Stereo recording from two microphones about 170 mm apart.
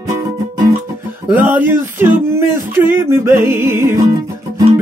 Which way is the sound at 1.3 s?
10° right (ahead or behind).